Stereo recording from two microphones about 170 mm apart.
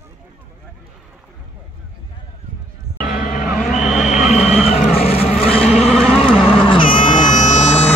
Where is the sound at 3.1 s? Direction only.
50° left (ahead or behind); by 5.9 s 35° left (ahead or behind).